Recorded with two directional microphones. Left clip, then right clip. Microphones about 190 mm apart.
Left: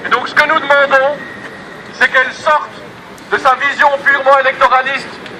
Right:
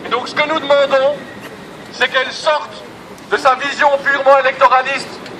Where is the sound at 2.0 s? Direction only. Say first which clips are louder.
Left 4 dB; 55° right (ahead or behind).